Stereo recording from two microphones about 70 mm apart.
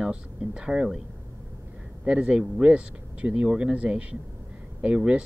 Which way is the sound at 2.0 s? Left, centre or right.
Centre.